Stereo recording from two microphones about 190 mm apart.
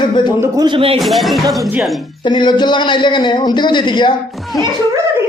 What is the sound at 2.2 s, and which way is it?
Speech, 25° left (ahead or behind).